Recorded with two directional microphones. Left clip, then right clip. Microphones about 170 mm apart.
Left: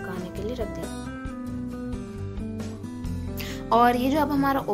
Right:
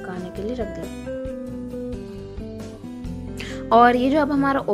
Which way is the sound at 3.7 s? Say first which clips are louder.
Right 5 dB; 25° right (ahead or behind).